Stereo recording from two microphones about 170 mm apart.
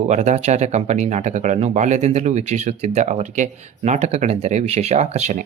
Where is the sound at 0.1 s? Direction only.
40° right (ahead or behind).